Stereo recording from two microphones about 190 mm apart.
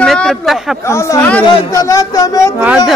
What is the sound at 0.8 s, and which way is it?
Speech, 15° left (ahead or behind).